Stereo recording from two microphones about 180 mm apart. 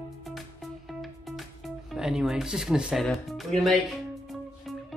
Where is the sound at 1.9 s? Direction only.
5° right (ahead or behind).